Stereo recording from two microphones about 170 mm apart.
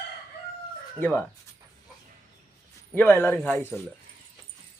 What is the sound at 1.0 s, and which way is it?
Speech, 10° left (ahead or behind).